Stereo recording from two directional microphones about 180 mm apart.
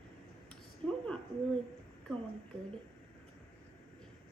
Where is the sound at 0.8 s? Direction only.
5° left (ahead or behind).